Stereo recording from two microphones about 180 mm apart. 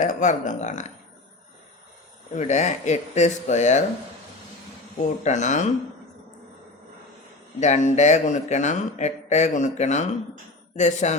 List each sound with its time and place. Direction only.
0.0 s speech: 45° left (ahead or behind)
2.3 s speech: 40° left (ahead or behind)
5.2 s speech: 40° left (ahead or behind)
7.6 s speech: 40° left (ahead or behind)